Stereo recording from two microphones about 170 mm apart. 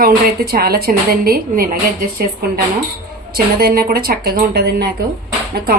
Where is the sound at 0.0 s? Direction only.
60° right (ahead or behind).